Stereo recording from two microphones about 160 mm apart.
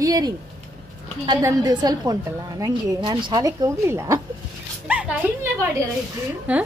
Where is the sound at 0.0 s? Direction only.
25° right (ahead or behind).